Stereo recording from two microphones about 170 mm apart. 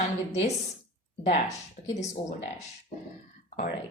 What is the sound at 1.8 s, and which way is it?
Speech, 50° left (ahead or behind).